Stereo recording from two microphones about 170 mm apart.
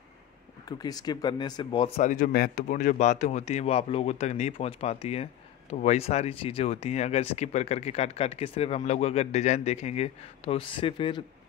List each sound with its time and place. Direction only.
0.7 s speech: 25° left (ahead or behind)
2.0 s speech: 50° left (ahead or behind); by 11.2 s 30° left (ahead or behind)